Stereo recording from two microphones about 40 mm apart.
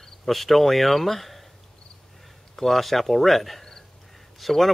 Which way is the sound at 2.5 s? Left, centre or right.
Centre.